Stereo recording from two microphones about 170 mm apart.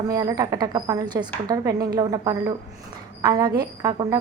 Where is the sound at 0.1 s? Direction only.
20° right (ahead or behind).